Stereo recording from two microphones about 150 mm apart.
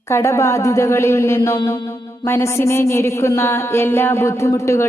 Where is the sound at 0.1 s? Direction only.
20° left (ahead or behind).